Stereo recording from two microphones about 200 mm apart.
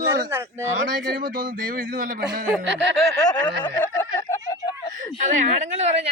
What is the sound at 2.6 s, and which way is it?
Speech, 60° right (ahead or behind).